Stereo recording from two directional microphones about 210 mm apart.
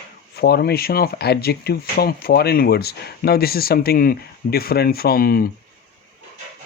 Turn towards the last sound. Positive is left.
turn(degrees=45)  # may be behind; listen again after turning